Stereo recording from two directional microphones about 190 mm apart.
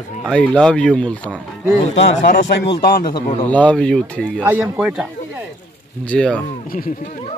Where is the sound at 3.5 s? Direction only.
5° left (ahead or behind).